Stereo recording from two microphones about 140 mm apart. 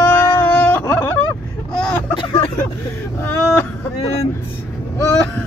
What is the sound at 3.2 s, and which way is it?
Speech, 15° left (ahead or behind).